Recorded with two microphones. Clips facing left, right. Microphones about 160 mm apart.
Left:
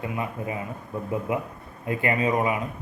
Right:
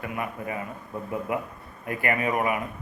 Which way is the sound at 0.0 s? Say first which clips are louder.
Left 2 dB; 20° left (ahead or behind).